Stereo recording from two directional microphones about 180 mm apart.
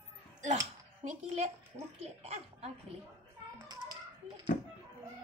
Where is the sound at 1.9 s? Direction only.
35° right (ahead or behind).